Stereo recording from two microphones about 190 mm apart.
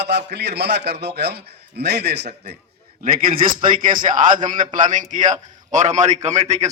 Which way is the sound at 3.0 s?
50° right (ahead or behind).